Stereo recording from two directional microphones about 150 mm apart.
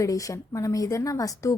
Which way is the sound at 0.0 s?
20° left (ahead or behind).